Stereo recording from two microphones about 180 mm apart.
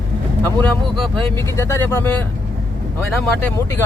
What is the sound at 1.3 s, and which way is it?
Speech, 15° left (ahead or behind).